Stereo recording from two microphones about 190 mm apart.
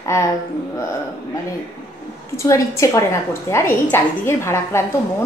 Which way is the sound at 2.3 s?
15° left (ahead or behind).